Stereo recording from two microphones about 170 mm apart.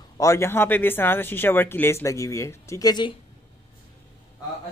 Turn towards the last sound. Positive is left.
turn(degrees=25)  # may be behind; listen again after turning